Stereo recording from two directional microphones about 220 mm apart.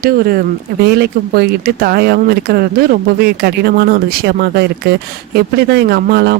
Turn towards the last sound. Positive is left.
turn(degrees=-45)  # may be behind; listen again after turning